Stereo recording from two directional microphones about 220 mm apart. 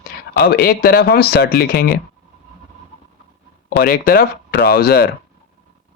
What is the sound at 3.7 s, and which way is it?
Speech, 45° left (ahead or behind).